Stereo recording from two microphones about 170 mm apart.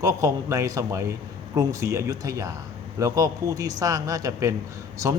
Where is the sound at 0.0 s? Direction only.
20° right (ahead or behind).